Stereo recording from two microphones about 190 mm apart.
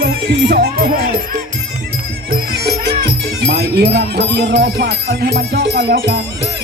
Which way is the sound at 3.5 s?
60° right (ahead or behind).